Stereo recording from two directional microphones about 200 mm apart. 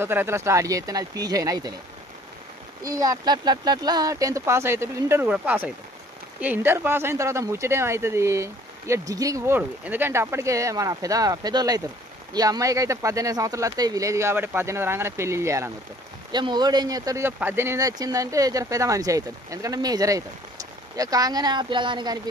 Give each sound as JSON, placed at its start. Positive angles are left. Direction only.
{"t": 0.0, "sound": "speech", "side_deg": -10}
{"t": 2.8, "sound": "speech", "side_deg": -20}